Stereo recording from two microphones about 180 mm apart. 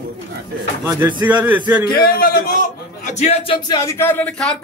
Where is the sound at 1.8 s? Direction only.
55° left (ahead or behind); by 3.8 s 30° left (ahead or behind).